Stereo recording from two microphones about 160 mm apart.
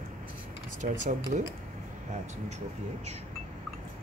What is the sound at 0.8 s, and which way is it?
Speech, 50° right (ahead or behind).